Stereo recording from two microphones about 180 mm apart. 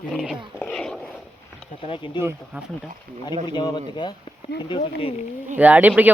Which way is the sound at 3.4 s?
25° left (ahead or behind).